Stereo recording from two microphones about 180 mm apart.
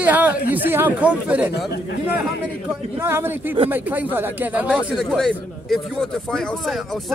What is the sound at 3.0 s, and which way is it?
Speech, 15° right (ahead or behind).